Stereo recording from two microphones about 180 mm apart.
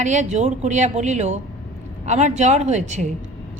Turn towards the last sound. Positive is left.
turn(degrees=-40)  # may be behind; listen again after turning